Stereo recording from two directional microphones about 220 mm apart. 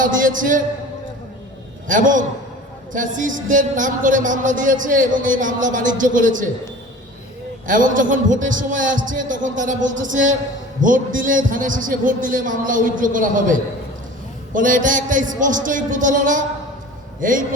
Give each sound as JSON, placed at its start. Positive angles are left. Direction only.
{"t": 0.0, "sound": "speech", "side_deg": -35}
{"t": 1.9, "sound": "speech", "side_deg": -35}
{"t": 7.7, "sound": "speech", "side_deg": -35}